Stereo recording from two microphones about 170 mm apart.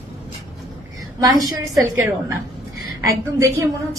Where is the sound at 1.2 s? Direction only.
20° right (ahead or behind).